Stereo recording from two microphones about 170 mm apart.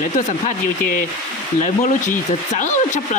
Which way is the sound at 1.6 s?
50° left (ahead or behind).